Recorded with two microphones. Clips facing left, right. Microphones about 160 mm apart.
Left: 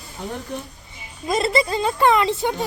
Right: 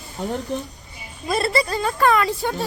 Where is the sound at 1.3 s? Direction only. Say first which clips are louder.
Left 1 dB; 20° left (ahead or behind).